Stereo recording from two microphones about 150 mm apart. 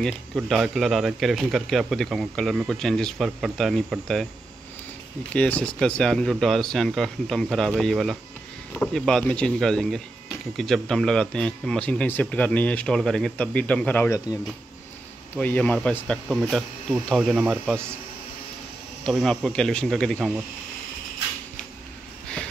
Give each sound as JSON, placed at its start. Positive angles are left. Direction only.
{"t": 0.0, "sound": "speech", "side_deg": 0}
{"t": 5.3, "sound": "speech", "side_deg": 10}
{"t": 15.3, "sound": "speech", "side_deg": 10}
{"t": 19.0, "sound": "speech", "side_deg": 0}